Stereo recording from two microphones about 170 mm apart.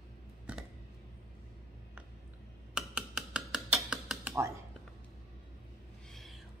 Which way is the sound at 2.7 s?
5° right (ahead or behind).